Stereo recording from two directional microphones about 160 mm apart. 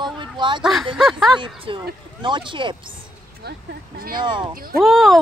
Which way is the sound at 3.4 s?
80° right.